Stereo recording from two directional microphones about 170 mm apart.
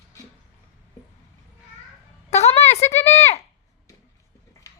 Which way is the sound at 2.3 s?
40° left (ahead or behind).